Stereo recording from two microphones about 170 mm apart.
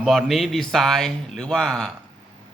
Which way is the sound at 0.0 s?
Centre (ahead or behind).